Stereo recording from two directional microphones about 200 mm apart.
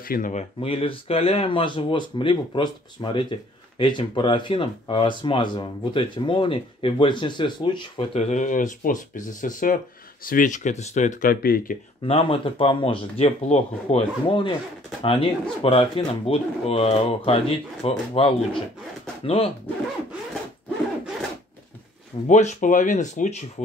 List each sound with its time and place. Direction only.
0.1 s speech: 40° left (ahead or behind)
12.0 s speech: 25° left (ahead or behind)
22.3 s speech: 35° left (ahead or behind)